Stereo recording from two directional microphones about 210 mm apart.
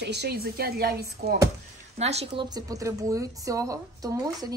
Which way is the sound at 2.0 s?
30° right (ahead or behind).